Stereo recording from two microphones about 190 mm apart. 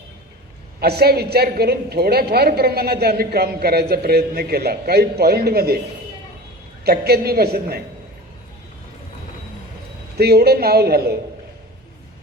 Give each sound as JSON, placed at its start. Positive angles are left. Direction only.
{"t": 0.8, "sound": "a woman's voice", "side_deg": -55}
{"t": 6.8, "sound": "a woman's voice", "side_deg": -55}
{"t": 10.2, "sound": "a woman's voice", "side_deg": -55}